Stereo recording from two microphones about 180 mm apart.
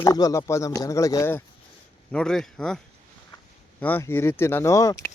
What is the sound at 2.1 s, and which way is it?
Speech, 5° left (ahead or behind).